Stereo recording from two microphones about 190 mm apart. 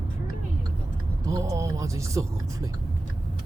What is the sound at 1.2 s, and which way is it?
Speech, 20° right (ahead or behind).